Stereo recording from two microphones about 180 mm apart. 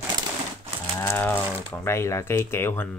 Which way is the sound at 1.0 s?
15° left (ahead or behind).